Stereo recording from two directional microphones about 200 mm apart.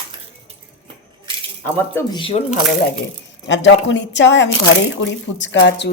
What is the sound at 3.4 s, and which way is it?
Speech, 65° left (ahead or behind).